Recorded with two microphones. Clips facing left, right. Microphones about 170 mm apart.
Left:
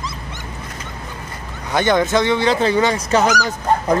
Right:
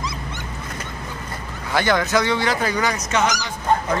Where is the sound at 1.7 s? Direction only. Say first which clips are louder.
Left 3 dB; 20° left (ahead or behind).